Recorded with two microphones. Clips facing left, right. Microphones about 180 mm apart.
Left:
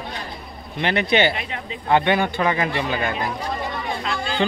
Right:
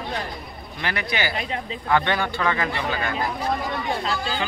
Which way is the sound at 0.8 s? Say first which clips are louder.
Left 8 dB; 25° left (ahead or behind).